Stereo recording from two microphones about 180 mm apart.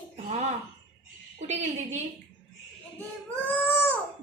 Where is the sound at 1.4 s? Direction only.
40° right (ahead or behind).